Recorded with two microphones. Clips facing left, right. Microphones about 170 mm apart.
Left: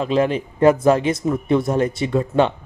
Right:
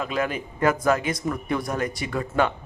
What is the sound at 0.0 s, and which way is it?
A man's voice, 30° left (ahead or behind).